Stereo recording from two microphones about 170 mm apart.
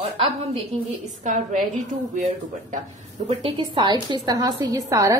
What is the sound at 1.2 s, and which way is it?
Speech, 50° right (ahead or behind).